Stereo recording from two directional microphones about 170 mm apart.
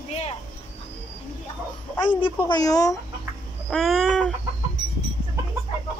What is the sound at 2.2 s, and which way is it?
Speech, 25° left (ahead or behind).